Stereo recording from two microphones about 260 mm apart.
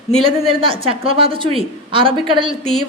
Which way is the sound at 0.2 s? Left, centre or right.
Centre.